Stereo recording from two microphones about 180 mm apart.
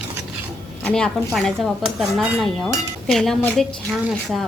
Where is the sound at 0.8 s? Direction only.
5° left (ahead or behind).